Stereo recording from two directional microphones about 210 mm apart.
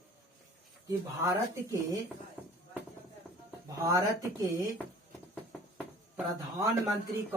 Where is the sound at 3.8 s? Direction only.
15° right (ahead or behind).